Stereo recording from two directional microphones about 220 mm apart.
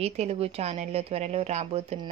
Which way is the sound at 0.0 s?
30° right (ahead or behind).